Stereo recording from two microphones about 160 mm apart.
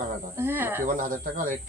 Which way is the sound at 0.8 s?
55° right (ahead or behind).